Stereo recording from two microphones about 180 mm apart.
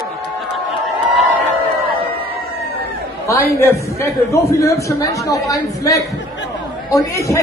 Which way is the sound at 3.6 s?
15° left (ahead or behind).